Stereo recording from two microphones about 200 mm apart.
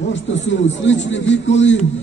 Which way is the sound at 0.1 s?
65° left (ahead or behind).